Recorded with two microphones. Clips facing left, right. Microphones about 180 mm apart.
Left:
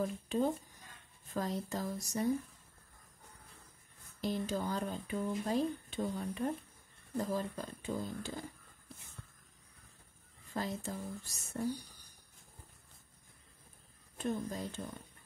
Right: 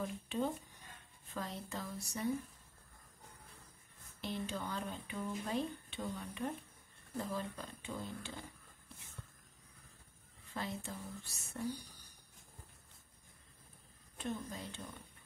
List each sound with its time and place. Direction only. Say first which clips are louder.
0.0 s speech: left 5 dB; 40° left (ahead or behind)
4.2 s speech: left 6 dB; 40° left (ahead or behind)
10.5 s speech: left 4 dB; 40° left (ahead or behind)
14.1 s speech: left 5 dB; 45° left (ahead or behind)